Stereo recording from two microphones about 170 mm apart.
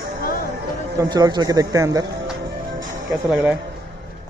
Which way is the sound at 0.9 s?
20° right (ahead or behind).